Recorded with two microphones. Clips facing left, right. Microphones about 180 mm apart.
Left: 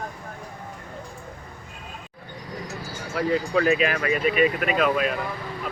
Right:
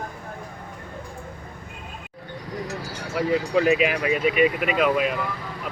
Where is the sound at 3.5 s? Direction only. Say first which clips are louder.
Right 2 dB; 15° right (ahead or behind).